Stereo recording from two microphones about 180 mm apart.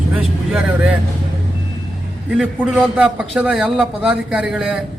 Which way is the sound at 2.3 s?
5° right (ahead or behind).